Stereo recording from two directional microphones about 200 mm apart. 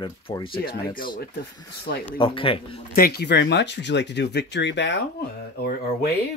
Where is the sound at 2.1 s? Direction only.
25° left (ahead or behind).